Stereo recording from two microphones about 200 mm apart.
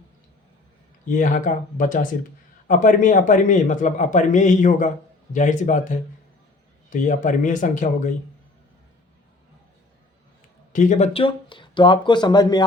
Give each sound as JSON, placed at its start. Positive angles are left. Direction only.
{"t": 1.0, "sound": "a man's voice", "side_deg": 40}
{"t": 10.7, "sound": "speech", "side_deg": 40}